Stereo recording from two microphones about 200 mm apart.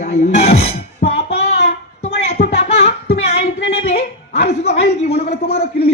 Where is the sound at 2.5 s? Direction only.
30° left (ahead or behind).